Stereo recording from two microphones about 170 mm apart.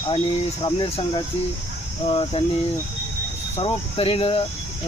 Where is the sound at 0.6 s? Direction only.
35° left (ahead or behind).